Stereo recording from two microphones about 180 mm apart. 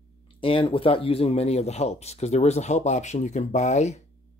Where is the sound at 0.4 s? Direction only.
30° left (ahead or behind).